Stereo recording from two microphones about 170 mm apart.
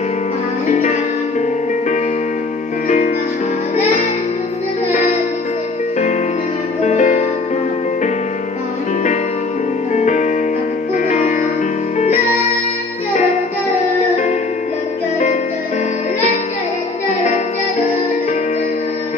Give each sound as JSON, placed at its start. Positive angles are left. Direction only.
{"t": 0.7, "sound": "music", "side_deg": 45}
{"t": 4.9, "sound": "music", "side_deg": 50}
{"t": 6.8, "sound": "music", "side_deg": 45}
{"t": 9.9, "sound": "music", "side_deg": 45}